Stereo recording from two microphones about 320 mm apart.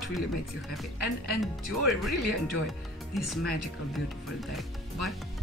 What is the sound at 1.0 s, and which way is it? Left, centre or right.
Speech, right.